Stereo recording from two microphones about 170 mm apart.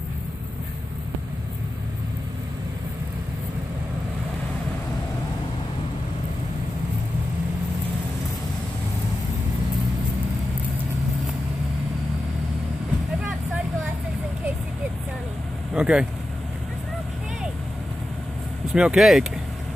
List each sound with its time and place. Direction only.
15.7 s speech: 5° right (ahead or behind)
18.7 s speech: 5° right (ahead or behind)